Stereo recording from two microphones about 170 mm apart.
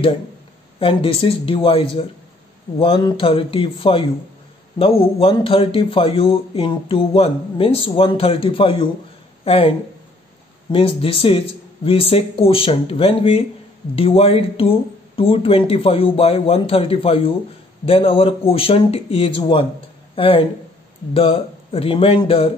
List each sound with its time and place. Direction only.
0.7 s speech: 35° left (ahead or behind)